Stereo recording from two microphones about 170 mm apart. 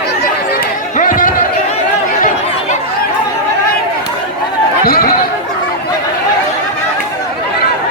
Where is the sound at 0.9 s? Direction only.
50° left (ahead or behind).